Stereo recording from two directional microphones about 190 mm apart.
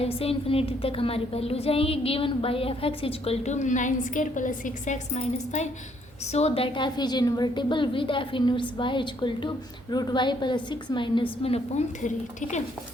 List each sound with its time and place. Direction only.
0.0 s a woman's voice: 30° left (ahead or behind)